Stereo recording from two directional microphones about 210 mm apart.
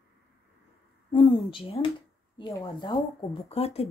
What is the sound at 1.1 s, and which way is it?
Speech, 25° left (ahead or behind).